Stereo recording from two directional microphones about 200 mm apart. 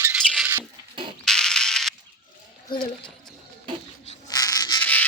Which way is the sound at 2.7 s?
20° left (ahead or behind).